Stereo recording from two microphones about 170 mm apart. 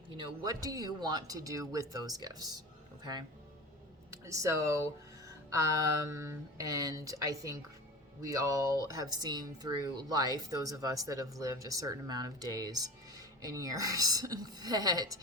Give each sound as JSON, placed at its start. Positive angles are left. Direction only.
{"t": 0.6, "sound": "speech", "side_deg": -20}
{"t": 4.1, "sound": "speech", "side_deg": -20}